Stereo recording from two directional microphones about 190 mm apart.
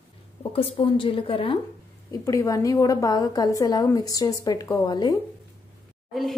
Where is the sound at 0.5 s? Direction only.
30° left (ahead or behind).